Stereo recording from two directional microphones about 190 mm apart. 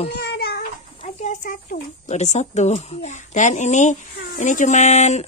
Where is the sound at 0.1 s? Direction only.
55° left (ahead or behind).